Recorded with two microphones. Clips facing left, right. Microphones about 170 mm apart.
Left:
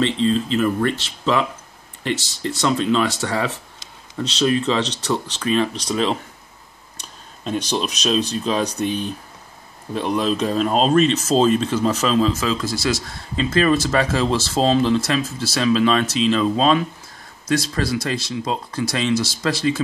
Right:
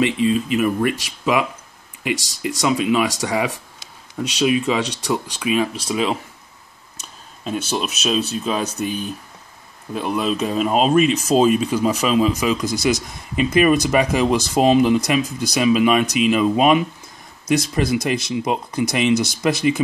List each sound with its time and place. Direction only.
0.0 s speech: 10° right (ahead or behind)